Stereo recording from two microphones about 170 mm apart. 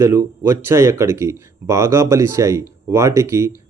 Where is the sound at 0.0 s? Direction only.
15° right (ahead or behind).